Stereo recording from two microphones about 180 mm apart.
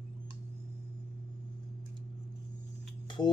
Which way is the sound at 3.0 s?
25° left (ahead or behind).